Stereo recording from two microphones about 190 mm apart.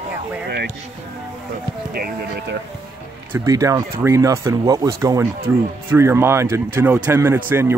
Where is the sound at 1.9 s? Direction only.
55° right (ahead or behind).